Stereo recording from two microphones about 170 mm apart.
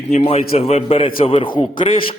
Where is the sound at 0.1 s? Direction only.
40° left (ahead or behind).